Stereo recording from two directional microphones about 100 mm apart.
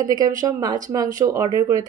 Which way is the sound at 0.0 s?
40° right (ahead or behind).